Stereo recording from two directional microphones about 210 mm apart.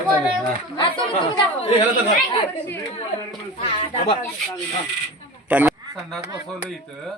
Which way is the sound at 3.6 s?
25° left (ahead or behind).